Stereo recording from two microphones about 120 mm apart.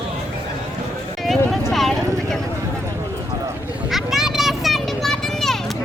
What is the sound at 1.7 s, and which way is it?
Clip-clop, centre (ahead or behind).